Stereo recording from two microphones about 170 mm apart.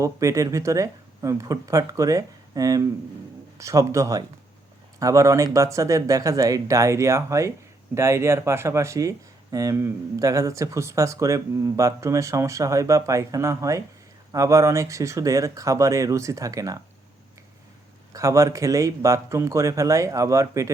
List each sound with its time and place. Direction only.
0.0 s speech: 20° right (ahead or behind)
18.1 s speech: 20° right (ahead or behind)